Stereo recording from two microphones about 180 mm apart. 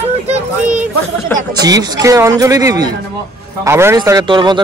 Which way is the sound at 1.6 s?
20° right (ahead or behind).